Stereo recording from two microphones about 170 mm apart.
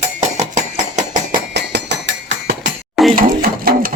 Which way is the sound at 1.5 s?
90° right.